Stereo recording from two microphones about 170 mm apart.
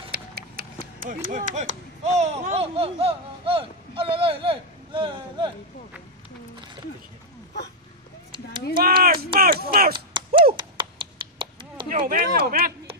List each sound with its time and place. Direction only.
0.1 s speech: 65° right (ahead or behind); by 5.5 s 30° right (ahead or behind)
8.7 s speech: 60° right (ahead or behind)
9.9 s a sound: 30° right (ahead or behind)
11.9 s speech: 55° right (ahead or behind)